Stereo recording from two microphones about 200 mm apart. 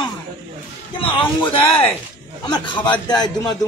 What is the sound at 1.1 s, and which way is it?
A man's voice, 25° left (ahead or behind).